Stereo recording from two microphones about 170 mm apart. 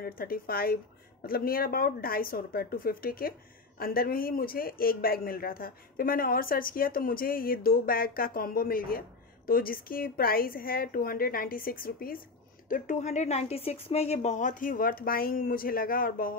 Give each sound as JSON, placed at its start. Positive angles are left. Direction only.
{"t": 0.0, "sound": "a man's voice", "side_deg": 60}